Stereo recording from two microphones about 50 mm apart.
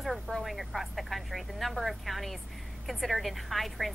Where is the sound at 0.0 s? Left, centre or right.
Centre.